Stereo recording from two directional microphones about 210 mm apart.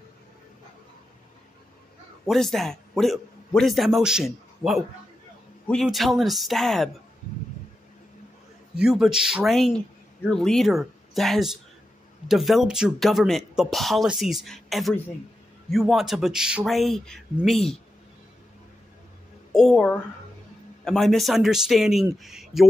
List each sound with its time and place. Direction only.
2.2 s a man's voice: centre (ahead or behind)
8.7 s speech: 5° right (ahead or behind)
19.5 s speech: 5° left (ahead or behind)